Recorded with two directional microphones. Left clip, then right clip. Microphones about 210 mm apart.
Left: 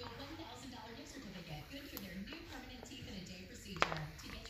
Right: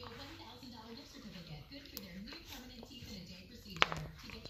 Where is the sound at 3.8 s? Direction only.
30° right (ahead or behind).